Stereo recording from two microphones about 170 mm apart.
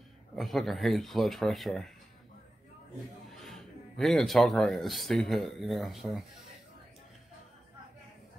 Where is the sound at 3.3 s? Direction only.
Centre (ahead or behind).